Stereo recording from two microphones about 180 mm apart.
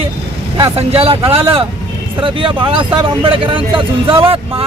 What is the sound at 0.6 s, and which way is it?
Speech, 35° right (ahead or behind).